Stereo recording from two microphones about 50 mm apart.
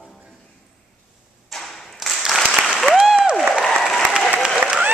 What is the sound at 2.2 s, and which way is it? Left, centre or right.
Applause, centre.